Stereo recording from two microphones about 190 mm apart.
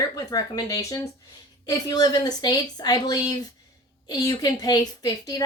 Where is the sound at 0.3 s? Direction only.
20° left (ahead or behind).